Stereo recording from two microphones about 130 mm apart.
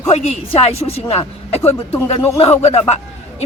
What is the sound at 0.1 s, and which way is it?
A woman's voice, 45° left (ahead or behind).